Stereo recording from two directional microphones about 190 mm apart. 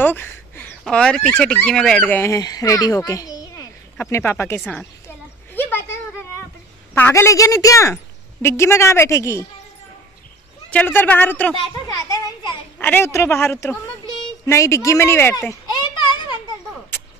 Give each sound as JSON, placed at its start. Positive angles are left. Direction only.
{"t": 0.0, "sound": "a woman's voice", "side_deg": 10}
{"t": 5.5, "sound": "a sound", "side_deg": 10}
{"t": 6.9, "sound": "a woman's voice", "side_deg": 10}
{"t": 10.7, "sound": "a woman's voice", "side_deg": 10}
{"t": 11.9, "sound": "a child's voice", "side_deg": 20}
{"t": 12.7, "sound": "a woman's voice", "side_deg": 10}